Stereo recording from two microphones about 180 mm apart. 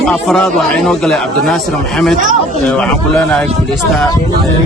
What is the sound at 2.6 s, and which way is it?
Speech, 5° left (ahead or behind).